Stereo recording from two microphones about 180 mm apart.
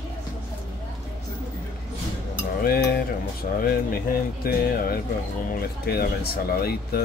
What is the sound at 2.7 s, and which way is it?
Speech, 60° left (ahead or behind).